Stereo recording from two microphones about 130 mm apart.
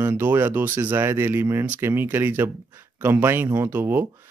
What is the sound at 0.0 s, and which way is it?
Speech, 15° right (ahead or behind).